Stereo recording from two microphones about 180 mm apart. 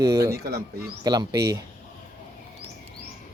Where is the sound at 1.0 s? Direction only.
20° right (ahead or behind).